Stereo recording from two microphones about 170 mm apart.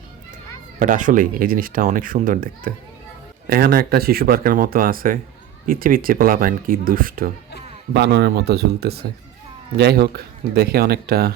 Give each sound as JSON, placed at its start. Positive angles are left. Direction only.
{"t": 0.8, "sound": "speech", "side_deg": -50}
{"t": 3.4, "sound": "speech", "side_deg": -65}
{"t": 7.9, "sound": "speech", "side_deg": -80}